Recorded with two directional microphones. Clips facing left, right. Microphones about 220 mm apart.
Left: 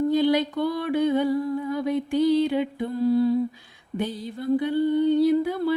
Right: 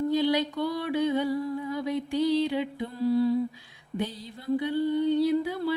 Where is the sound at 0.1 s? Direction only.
50° left (ahead or behind).